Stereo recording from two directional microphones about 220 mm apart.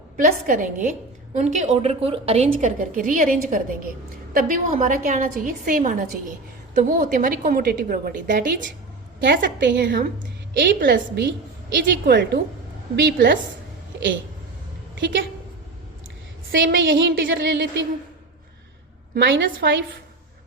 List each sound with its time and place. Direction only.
0.2 s a woman's voice: 35° right (ahead or behind)
9.2 s a woman's voice: 50° right (ahead or behind)
16.5 s a woman's voice: 55° right (ahead or behind)
19.1 s a woman's voice: 55° right (ahead or behind)